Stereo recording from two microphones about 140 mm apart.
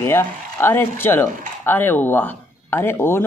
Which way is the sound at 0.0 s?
15° left (ahead or behind).